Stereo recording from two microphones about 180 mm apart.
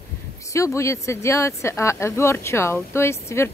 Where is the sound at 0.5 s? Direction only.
15° left (ahead or behind).